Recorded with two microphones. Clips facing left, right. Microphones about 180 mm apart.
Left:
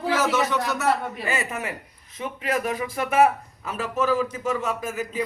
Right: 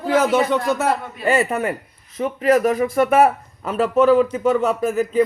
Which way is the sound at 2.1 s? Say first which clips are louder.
Right 10 dB; 45° right (ahead or behind).